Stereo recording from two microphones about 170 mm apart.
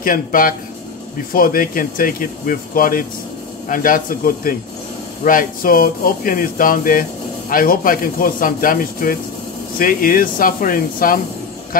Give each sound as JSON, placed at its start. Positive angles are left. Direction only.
{"t": 0.0, "sound": "speech", "side_deg": 55}